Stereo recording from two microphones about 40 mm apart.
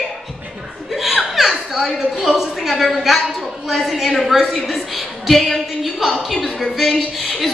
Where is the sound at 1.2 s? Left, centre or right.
Centre.